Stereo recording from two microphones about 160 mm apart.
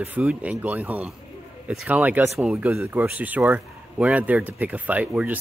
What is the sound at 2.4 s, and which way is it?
Speech, centre (ahead or behind).